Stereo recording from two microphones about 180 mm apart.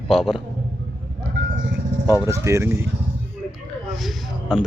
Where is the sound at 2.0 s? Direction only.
15° right (ahead or behind).